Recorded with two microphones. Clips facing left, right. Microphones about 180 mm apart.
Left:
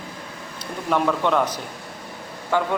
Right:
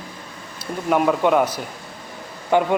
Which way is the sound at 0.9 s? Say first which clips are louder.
Right 3 dB; 10° right (ahead or behind).